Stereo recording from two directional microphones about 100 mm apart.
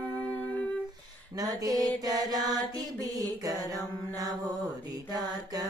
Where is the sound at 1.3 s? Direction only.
40° right (ahead or behind).